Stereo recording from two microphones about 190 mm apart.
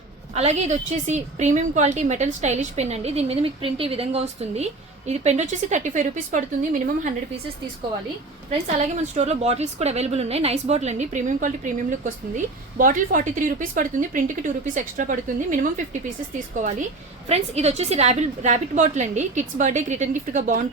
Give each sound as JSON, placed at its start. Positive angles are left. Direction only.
{"t": 0.3, "sound": "a woman's voice", "side_deg": -35}
{"t": 9.1, "sound": "a woman's voice", "side_deg": -35}
{"t": 17.2, "sound": "a woman's voice", "side_deg": -35}